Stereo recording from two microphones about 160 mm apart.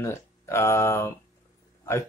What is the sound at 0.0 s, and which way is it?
Speech, 15° left (ahead or behind).